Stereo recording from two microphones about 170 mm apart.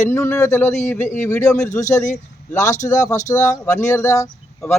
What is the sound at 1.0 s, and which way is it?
Speech, 45° left (ahead or behind).